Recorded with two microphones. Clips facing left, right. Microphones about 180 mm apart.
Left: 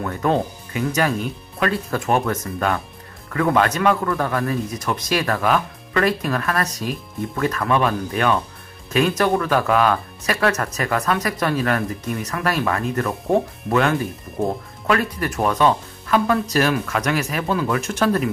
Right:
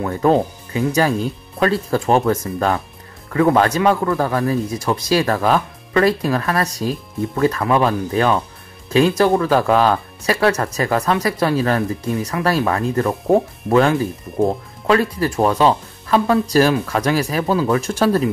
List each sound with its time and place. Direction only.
0.0 s speech: 30° right (ahead or behind)